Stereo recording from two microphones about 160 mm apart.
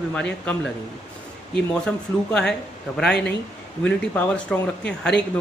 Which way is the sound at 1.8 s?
5° left (ahead or behind).